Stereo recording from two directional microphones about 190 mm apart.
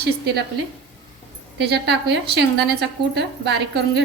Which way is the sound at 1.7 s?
60° right (ahead or behind).